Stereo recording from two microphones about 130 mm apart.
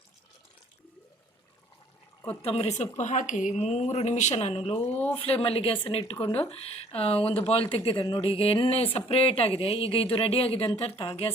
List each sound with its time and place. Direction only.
2.4 s speech: 50° left (ahead or behind)
3.0 s speech: 70° left (ahead or behind); by 4.8 s 45° left (ahead or behind)
4.9 s speech: 15° left (ahead or behind)
5.2 s speech: 50° left (ahead or behind)
7.9 s speech: 35° left (ahead or behind)